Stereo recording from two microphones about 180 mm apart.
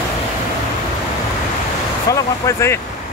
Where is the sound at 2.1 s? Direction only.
15° left (ahead or behind).